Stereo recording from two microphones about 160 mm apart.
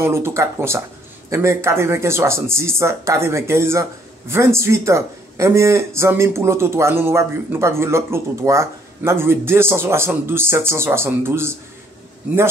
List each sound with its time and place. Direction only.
0.0 s speech: 15° right (ahead or behind)